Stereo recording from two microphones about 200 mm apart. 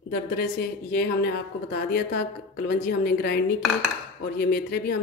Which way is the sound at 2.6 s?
50° left (ahead or behind).